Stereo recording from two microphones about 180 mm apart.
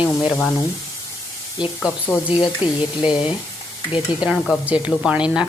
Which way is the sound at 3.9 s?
30° left (ahead or behind).